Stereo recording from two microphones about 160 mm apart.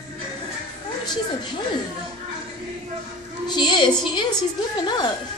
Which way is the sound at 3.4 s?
25° left (ahead or behind).